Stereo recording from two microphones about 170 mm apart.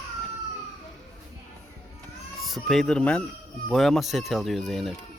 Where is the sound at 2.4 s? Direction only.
Centre (ahead or behind).